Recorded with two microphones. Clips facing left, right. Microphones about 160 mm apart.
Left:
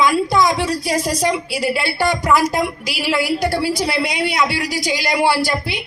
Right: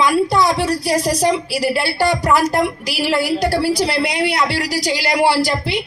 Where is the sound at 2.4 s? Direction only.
15° left (ahead or behind).